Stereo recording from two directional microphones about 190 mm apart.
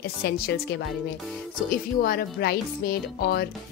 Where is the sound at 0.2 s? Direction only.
60° left (ahead or behind).